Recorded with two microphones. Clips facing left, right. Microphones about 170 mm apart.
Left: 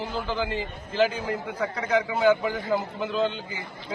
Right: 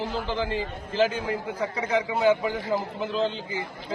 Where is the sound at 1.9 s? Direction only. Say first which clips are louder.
Left 1 dB; 30° right (ahead or behind).